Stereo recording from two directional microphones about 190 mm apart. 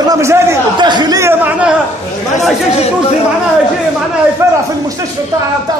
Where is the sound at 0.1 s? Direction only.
15° right (ahead or behind).